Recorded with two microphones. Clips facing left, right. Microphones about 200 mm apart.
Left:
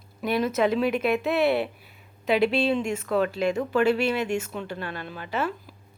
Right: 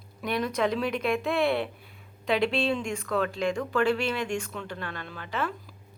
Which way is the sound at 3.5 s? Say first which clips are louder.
Left 3 dB; 25° left (ahead or behind).